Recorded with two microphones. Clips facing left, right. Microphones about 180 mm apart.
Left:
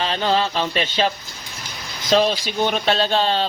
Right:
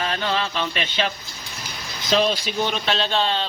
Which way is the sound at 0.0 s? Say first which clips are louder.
Left 4 dB; 30° left (ahead or behind).